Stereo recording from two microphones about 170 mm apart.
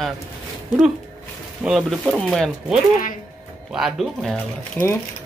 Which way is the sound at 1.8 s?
Centre (ahead or behind).